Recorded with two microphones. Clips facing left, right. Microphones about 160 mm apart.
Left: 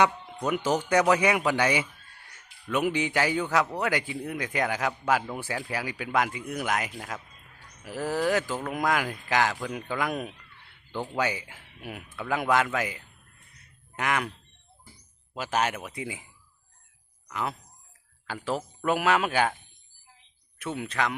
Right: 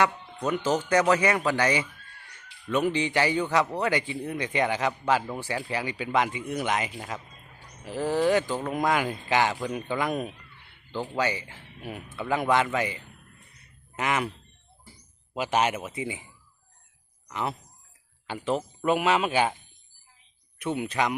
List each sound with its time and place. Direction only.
0.3 s speech: 10° left (ahead or behind)
15.4 s speech: 10° right (ahead or behind)
17.2 s speech: centre (ahead or behind)
19.3 s speech: 10° right (ahead or behind)
21.0 s speech: 15° right (ahead or behind)